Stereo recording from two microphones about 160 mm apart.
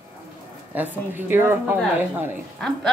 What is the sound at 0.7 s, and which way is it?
A woman's voice, 10° right (ahead or behind).